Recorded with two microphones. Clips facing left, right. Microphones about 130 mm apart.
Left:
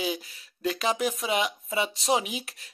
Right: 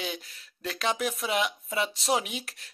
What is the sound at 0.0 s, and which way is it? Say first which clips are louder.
Speech: left 5 dB; 5° left (ahead or behind).